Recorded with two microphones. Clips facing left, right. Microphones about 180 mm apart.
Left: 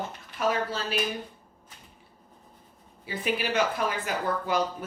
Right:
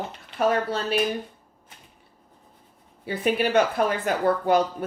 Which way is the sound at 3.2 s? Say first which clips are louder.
Right 6 dB; 55° right (ahead or behind).